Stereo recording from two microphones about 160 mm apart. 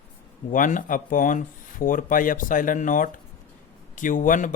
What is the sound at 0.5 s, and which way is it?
Speech, 55° left (ahead or behind).